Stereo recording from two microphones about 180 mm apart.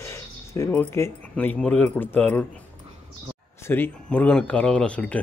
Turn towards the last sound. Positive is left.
turn(degrees=5)  # may be behind; listen again after turning